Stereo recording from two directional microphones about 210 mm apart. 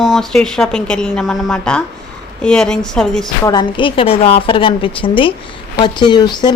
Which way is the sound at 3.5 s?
20° left (ahead or behind).